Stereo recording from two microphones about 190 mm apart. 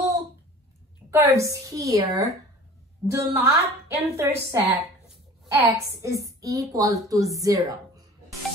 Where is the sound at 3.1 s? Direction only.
15° right (ahead or behind).